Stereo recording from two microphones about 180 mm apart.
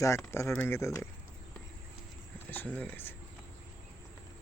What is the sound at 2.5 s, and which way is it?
Speech, 10° left (ahead or behind).